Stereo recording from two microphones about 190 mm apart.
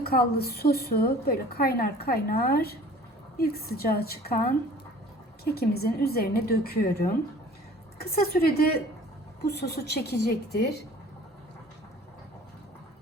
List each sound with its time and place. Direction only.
0.0 s a woman's voice: 55° left (ahead or behind)
5.5 s a woman's voice: 55° left (ahead or behind)